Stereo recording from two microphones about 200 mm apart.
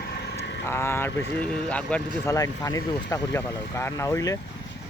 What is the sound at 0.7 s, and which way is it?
Speech, 10° left (ahead or behind).